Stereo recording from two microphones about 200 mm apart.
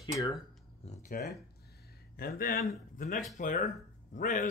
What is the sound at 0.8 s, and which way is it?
Speech, 35° left (ahead or behind).